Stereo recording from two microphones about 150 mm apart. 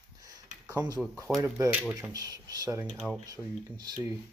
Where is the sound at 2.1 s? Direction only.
25° right (ahead or behind).